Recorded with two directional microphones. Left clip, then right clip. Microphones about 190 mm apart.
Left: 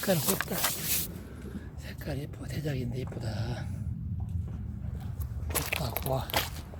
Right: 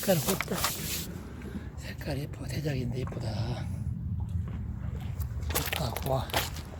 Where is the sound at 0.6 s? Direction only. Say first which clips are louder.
Even; 45° left (ahead or behind).